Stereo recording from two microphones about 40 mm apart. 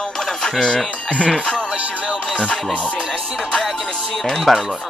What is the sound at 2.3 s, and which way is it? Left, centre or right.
Music, left.